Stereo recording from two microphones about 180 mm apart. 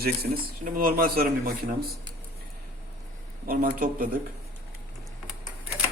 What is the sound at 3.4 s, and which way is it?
Speech, 50° right (ahead or behind).